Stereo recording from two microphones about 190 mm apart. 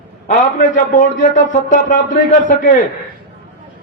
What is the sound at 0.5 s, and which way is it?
Speech, 45° left (ahead or behind).